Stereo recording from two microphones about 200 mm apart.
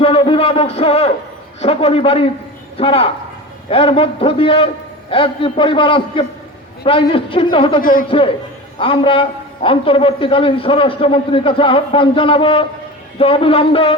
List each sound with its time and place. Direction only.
0.0 s a sound: 25° left (ahead or behind)
1.6 s a man's voice: 30° left (ahead or behind)
7.8 s speech: 45° left (ahead or behind)
8.8 s a man's voice: 25° left (ahead or behind)